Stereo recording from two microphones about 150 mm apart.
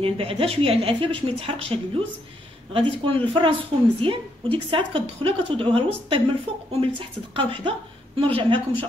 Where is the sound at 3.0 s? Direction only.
35° right (ahead or behind).